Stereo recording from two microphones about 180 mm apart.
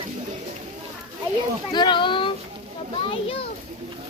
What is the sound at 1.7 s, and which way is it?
A child's voice, 25° left (ahead or behind).